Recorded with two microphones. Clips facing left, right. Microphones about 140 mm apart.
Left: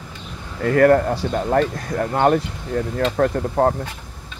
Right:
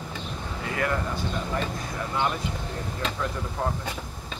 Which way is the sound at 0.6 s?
55° left (ahead or behind).